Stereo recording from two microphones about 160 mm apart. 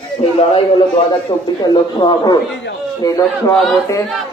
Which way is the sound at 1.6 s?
25° left (ahead or behind).